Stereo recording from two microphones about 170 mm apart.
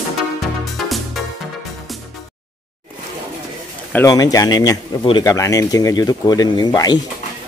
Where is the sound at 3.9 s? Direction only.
20° left (ahead or behind).